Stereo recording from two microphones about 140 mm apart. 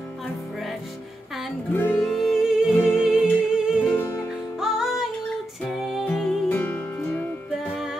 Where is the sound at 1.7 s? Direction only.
15° left (ahead or behind).